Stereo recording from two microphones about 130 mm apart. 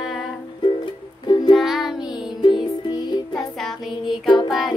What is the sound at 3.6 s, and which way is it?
Child singing, centre (ahead or behind).